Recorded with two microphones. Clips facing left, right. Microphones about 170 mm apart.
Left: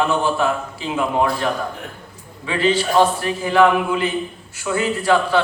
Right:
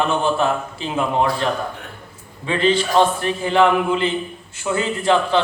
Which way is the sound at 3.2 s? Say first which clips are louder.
Left 1 dB; 25° right (ahead or behind).